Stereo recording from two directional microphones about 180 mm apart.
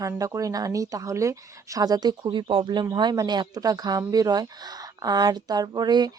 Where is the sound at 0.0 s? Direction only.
20° right (ahead or behind).